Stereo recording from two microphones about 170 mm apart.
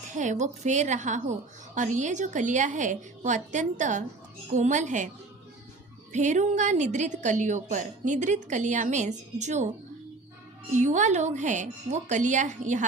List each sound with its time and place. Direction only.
0.1 s a woman's voice: 45° right (ahead or behind)
6.1 s a woman's voice: 45° right (ahead or behind)
10.8 s a woman's voice: 45° right (ahead or behind)